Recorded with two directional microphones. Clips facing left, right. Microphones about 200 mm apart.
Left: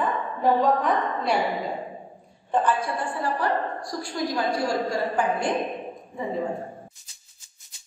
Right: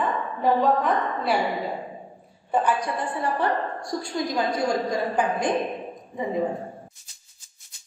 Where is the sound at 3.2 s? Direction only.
25° right (ahead or behind).